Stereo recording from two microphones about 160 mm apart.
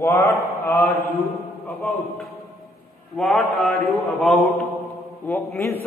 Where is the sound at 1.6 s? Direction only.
Centre (ahead or behind).